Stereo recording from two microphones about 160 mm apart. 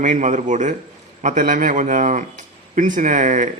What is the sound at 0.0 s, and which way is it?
Speech, 50° right (ahead or behind).